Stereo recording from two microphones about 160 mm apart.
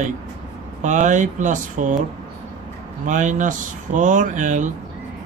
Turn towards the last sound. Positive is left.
turn(degrees=-50)  # may be behind; listen again after turning